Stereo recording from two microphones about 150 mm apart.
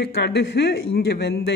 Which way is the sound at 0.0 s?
90° left.